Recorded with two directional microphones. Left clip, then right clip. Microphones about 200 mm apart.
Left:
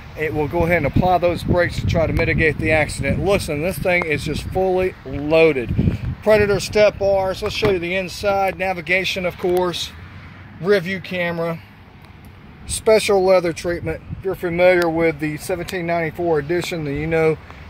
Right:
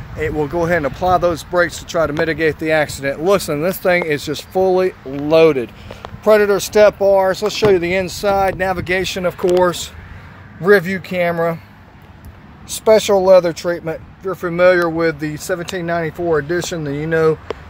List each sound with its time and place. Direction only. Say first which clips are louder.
0.2 s speech: right 2 dB; 5° left (ahead or behind)
1.0 s speech: right 4 dB; 10° right (ahead or behind)
3.3 s speech: right 4 dB; 25° right (ahead or behind)
12.6 s speech: right 3 dB; 15° right (ahead or behind); by 17.4 s centre (ahead or behind)